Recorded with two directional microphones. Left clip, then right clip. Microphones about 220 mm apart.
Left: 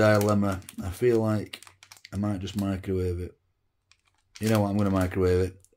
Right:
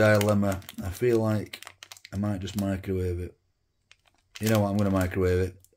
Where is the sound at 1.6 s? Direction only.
20° right (ahead or behind).